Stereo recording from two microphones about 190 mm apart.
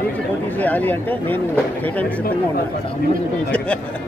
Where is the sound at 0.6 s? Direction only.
10° left (ahead or behind).